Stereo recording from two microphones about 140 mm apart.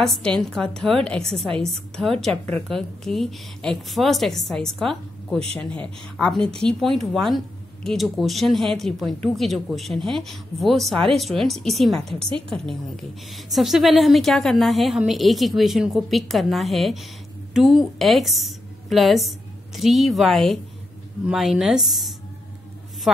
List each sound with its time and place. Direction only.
0.0 s a woman's voice: 5° left (ahead or behind)